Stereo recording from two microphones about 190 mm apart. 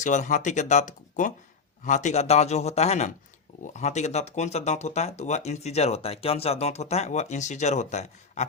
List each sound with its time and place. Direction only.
0.0 s speech: 40° left (ahead or behind)